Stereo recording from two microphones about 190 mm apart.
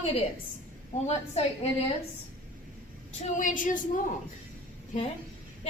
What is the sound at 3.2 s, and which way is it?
Speech, 45° left (ahead or behind).